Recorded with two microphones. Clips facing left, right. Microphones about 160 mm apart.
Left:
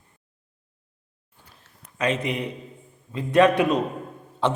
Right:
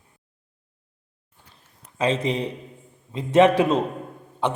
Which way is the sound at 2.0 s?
30° right (ahead or behind).